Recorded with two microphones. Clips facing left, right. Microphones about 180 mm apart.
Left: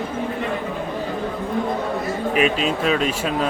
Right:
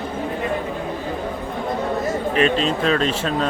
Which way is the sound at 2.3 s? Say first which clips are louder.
Even; 5° left (ahead or behind).